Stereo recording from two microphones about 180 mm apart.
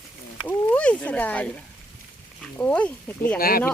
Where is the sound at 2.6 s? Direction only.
10° left (ahead or behind).